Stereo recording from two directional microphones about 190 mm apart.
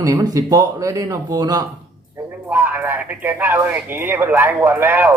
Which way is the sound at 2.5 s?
10° right (ahead or behind).